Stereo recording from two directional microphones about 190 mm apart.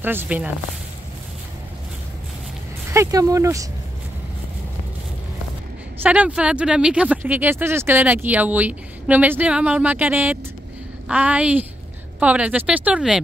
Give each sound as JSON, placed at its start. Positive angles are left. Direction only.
{"t": 0.0, "sound": "speech", "side_deg": -10}
{"t": 2.9, "sound": "speech", "side_deg": -15}
{"t": 6.0, "sound": "speech", "side_deg": -5}